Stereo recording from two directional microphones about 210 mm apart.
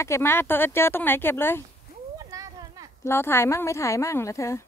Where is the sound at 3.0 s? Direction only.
10° left (ahead or behind).